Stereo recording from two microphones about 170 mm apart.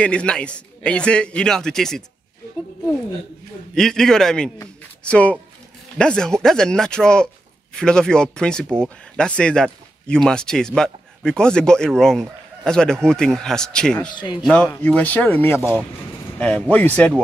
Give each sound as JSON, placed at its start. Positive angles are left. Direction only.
{"t": 0.0, "sound": "speech", "side_deg": 5}
{"t": 3.7, "sound": "speech", "side_deg": 5}
{"t": 14.1, "sound": "speech", "side_deg": 25}
{"t": 14.4, "sound": "speech", "side_deg": 5}